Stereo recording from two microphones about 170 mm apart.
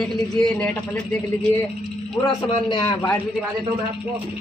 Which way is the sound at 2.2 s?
25° left (ahead or behind).